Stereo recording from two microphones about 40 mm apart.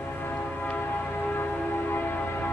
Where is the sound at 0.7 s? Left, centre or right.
Left.